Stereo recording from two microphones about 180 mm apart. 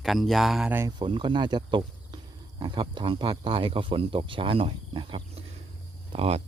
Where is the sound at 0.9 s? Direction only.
25° right (ahead or behind).